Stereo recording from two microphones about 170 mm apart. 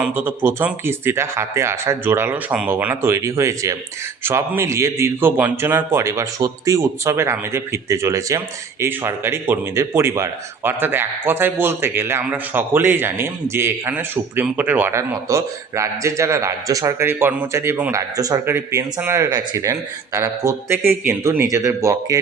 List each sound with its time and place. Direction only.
0.0 s speech: 10° right (ahead or behind)